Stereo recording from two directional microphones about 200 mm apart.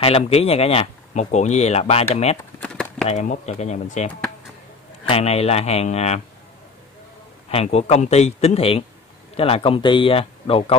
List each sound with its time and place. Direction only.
0.0 s speech: 30° left (ahead or behind)
2.6 s a sound: 5° left (ahead or behind)
3.1 s speech: 35° left (ahead or behind)
7.5 s speech: 30° left (ahead or behind)